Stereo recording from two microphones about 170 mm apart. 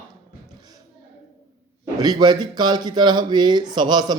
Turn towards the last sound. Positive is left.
turn(degrees=-25)  # may be behind; listen again after turning